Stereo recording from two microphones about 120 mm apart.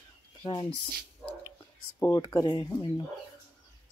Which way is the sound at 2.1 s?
35° left (ahead or behind).